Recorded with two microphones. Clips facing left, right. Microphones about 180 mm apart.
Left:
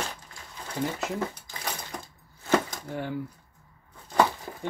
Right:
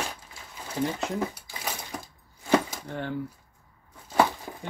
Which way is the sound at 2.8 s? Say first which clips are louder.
Even; 10° left (ahead or behind).